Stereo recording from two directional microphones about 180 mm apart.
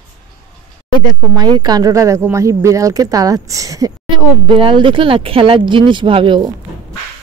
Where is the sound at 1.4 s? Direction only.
25° right (ahead or behind).